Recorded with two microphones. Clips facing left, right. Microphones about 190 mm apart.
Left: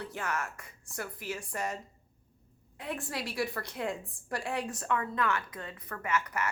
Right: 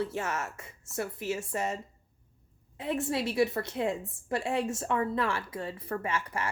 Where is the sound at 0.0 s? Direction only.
25° right (ahead or behind).